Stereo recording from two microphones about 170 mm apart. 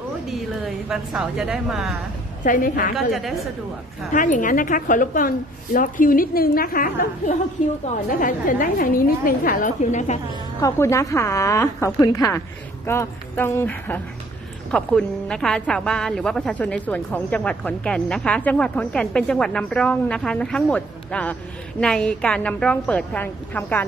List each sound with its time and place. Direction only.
0.3 s a woman's voice: centre (ahead or behind)
2.4 s a woman's voice: 55° left (ahead or behind)
3.1 s a woman's voice: centre (ahead or behind)
4.1 s a woman's voice: 50° left (ahead or behind)
10.6 s a woman's voice: 15° left (ahead or behind)